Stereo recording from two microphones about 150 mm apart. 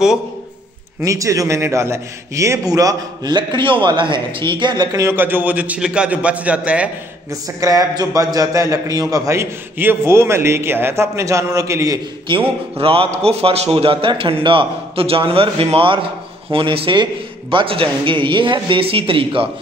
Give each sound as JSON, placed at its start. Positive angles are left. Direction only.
{"t": 1.0, "sound": "a man's voice", "side_deg": -20}
{"t": 7.2, "sound": "a man's voice", "side_deg": -25}
{"t": 12.3, "sound": "a man's voice", "side_deg": -35}